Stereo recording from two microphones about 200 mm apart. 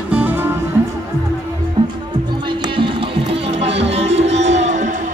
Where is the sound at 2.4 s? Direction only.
25° right (ahead or behind).